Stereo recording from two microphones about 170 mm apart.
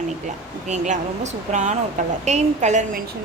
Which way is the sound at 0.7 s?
45° right (ahead or behind).